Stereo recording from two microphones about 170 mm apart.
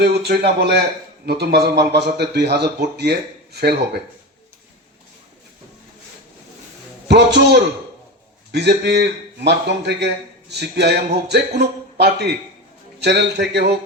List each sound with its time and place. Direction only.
0.0 s a man's voice: 75° right (ahead or behind)
7.3 s a man's voice: 80° right